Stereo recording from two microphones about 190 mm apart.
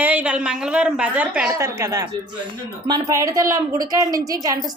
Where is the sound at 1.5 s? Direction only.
15° right (ahead or behind).